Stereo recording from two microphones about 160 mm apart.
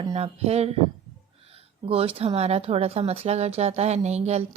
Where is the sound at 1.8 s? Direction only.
35° right (ahead or behind).